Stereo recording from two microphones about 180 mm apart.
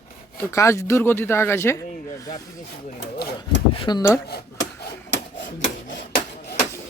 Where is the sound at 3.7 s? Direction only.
25° left (ahead or behind).